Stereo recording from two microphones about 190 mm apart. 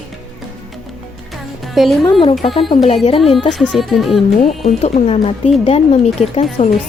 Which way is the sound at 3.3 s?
5° left (ahead or behind).